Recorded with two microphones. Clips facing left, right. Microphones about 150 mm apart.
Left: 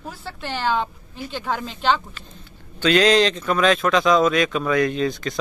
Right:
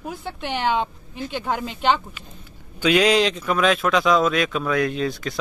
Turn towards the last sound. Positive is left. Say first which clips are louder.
# left 2 dB
turn(degrees=-5)  # may be behind; listen again after turning